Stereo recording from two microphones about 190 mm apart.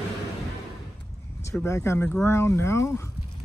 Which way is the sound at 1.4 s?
15° left (ahead or behind).